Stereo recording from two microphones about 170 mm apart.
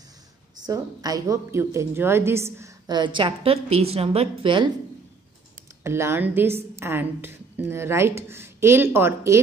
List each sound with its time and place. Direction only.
0.7 s a woman's voice: 20° right (ahead or behind)
2.9 s a woman's voice: 30° right (ahead or behind)
5.9 s a woman's voice: 15° right (ahead or behind)